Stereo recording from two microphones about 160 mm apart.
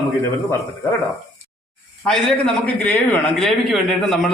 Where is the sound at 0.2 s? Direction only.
15° left (ahead or behind).